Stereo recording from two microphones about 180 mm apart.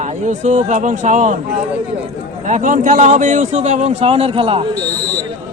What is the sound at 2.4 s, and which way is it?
A man's voice, 45° right (ahead or behind).